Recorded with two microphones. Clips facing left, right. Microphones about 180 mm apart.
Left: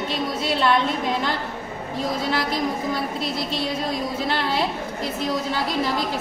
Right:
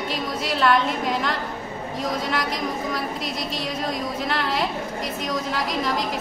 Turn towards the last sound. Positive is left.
turn(degrees=30)  # may be behind; listen again after turning